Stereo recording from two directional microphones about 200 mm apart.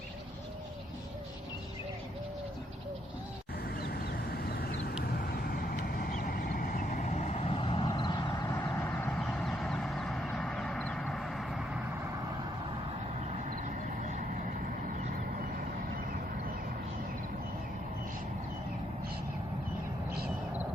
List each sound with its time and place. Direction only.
3.8 s duck: 50° left (ahead or behind)
5.0 s vehicle: 50° left (ahead or behind); by 11.9 s 5° right (ahead or behind)
13.7 s a sound: 40° right (ahead or behind)
15.0 s vehicle: 45° right (ahead or behind)